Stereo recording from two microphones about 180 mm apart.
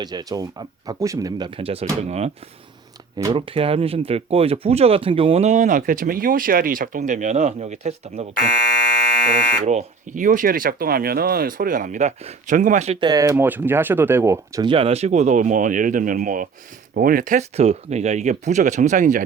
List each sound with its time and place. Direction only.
0.0 s speech: 25° right (ahead or behind)
1.5 s speech: 30° right (ahead or behind)
3.3 s speech: 30° right (ahead or behind)
9.6 s speech: 40° right (ahead or behind)
13.0 s speech: 20° right (ahead or behind); by 19.2 s 45° right (ahead or behind)